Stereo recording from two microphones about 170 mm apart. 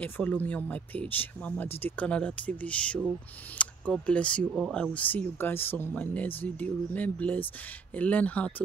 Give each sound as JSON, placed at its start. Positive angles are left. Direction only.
{"t": 0.0, "sound": "speech", "side_deg": 10}
{"t": 4.9, "sound": "speech", "side_deg": 10}